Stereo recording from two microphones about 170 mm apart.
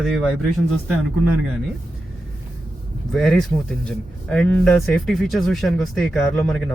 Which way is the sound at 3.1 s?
Centre (ahead or behind).